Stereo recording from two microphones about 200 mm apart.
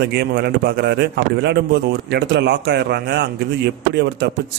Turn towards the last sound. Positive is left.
turn(degrees=-55)  # may be behind; listen again after turning